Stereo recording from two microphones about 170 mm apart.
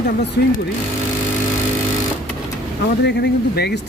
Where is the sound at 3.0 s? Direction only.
75° left (ahead or behind).